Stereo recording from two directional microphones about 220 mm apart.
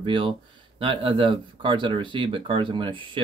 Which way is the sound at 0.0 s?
20° right (ahead or behind).